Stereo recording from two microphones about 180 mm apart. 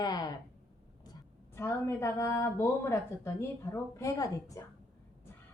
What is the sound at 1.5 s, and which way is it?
A woman's voice, 15° left (ahead or behind).